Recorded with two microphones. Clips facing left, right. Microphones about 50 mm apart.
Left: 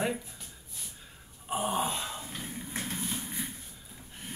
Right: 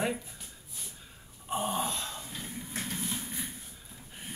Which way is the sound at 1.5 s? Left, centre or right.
Centre.